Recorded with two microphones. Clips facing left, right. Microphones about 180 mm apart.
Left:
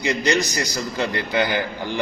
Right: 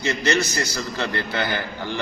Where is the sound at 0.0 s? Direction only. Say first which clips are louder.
Left 1 dB; 15° left (ahead or behind).